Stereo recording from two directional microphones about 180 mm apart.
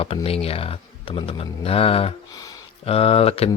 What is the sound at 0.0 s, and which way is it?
Speech, 30° left (ahead or behind).